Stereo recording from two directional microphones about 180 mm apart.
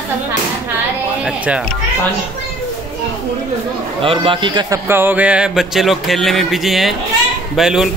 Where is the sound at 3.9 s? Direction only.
30° right (ahead or behind).